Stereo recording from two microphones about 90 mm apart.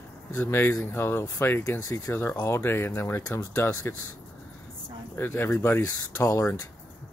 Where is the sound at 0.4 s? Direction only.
25° left (ahead or behind).